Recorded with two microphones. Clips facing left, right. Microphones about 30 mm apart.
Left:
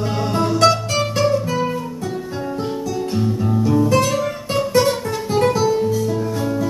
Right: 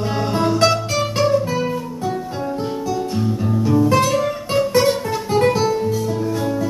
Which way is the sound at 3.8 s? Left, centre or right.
Centre.